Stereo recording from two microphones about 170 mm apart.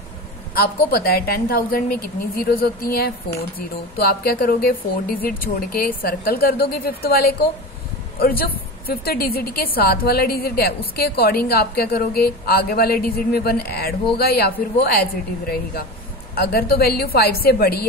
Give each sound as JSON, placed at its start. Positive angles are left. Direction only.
{"t": 0.6, "sound": "a woman's voice", "side_deg": 60}